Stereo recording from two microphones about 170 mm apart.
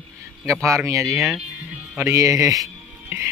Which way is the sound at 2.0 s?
15° right (ahead or behind).